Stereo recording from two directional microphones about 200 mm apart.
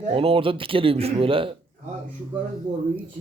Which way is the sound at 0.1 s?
25° right (ahead or behind).